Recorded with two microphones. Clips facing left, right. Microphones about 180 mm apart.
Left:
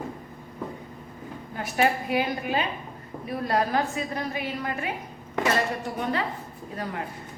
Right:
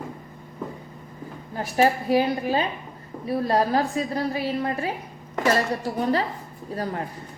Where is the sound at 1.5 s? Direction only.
35° right (ahead or behind).